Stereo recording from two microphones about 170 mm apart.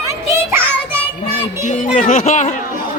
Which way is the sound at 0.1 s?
15° right (ahead or behind).